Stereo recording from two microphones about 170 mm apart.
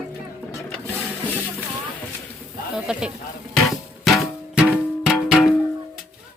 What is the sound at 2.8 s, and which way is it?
Speech, 5° right (ahead or behind).